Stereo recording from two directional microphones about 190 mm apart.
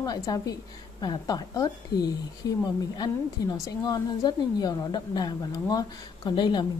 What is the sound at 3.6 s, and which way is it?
A woman's voice, 20° left (ahead or behind).